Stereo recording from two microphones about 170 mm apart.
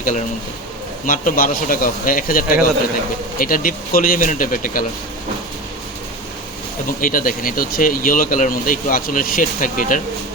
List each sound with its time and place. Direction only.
0.0 s speech: 50° left (ahead or behind)
7.0 s speech: 55° left (ahead or behind)